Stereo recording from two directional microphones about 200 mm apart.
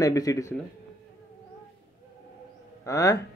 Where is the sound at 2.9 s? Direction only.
15° left (ahead or behind).